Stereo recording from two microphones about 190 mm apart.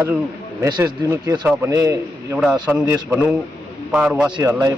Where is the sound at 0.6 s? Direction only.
20° right (ahead or behind).